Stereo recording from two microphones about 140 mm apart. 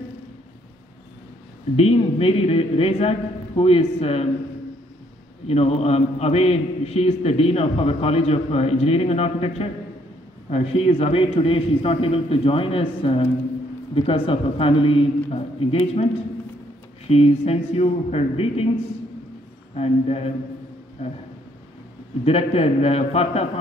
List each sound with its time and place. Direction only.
1.8 s a man's voice: 45° left (ahead or behind)
5.5 s a man's voice: 50° left (ahead or behind)
17.1 s a man's voice: 45° left (ahead or behind)
19.7 s a man's voice: 45° left (ahead or behind)
22.2 s a man's voice: 45° left (ahead or behind)